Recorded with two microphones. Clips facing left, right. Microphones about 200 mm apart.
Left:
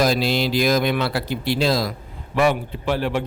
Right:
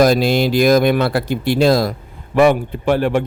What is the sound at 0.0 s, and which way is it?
Speech, 50° right (ahead or behind).